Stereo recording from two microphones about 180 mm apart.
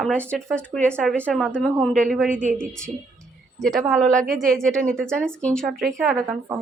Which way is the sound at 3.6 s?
5° left (ahead or behind).